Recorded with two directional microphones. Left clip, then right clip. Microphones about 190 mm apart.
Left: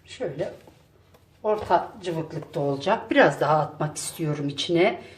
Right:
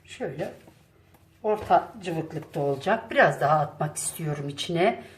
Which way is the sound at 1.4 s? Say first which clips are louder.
Even; 15° left (ahead or behind).